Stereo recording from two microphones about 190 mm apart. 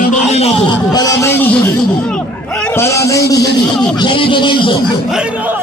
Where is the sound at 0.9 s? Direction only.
15° left (ahead or behind).